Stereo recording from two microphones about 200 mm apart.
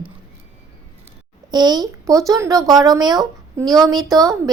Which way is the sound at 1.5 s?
20° right (ahead or behind).